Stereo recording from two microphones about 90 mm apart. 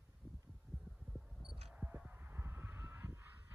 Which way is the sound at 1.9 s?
20° right (ahead or behind).